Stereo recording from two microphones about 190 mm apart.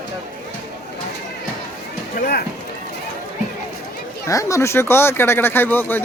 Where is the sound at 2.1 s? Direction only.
55° left (ahead or behind).